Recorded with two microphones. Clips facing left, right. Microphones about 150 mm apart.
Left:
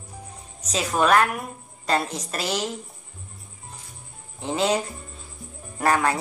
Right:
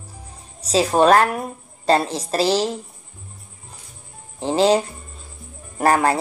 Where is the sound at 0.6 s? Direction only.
30° right (ahead or behind).